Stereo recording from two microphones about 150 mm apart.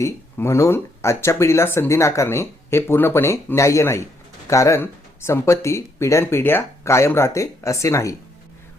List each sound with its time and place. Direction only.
0.0 s speech: 20° left (ahead or behind)